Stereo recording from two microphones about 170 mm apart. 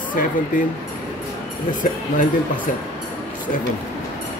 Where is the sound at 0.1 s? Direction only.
55° left (ahead or behind).